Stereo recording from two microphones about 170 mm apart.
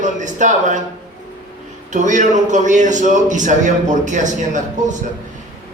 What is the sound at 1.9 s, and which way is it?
A man's voice, 45° right (ahead or behind).